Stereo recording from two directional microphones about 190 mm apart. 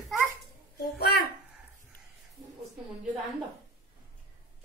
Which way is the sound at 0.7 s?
55° left (ahead or behind).